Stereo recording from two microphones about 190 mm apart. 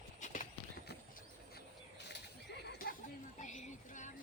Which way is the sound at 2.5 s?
60° left (ahead or behind).